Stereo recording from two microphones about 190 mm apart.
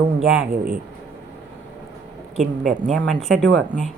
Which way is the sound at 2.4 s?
Centre (ahead or behind).